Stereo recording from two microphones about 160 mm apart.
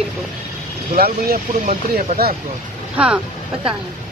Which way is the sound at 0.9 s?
65° right (ahead or behind).